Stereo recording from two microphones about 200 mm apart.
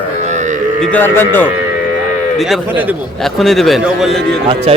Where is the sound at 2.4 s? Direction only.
5° right (ahead or behind).